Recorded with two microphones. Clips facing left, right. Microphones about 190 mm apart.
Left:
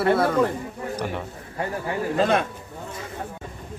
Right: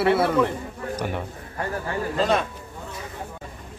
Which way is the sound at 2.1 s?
55° left (ahead or behind).